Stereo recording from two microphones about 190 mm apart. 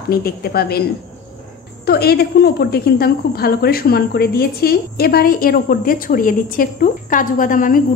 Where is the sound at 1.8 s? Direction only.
55° left (ahead or behind).